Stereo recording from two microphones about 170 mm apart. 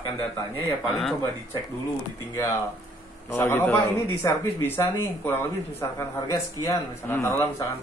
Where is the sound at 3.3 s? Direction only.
10° left (ahead or behind).